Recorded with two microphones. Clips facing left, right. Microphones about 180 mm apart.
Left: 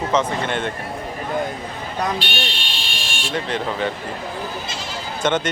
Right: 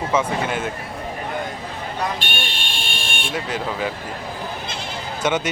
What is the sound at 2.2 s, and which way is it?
Fire alarm, 50° right (ahead or behind).